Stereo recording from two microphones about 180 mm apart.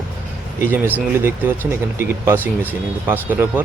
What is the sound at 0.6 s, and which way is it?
Speech, 10° right (ahead or behind).